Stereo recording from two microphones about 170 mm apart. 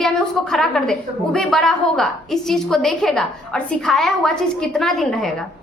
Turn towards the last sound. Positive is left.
turn(degrees=0)  # may be behind; listen again after turning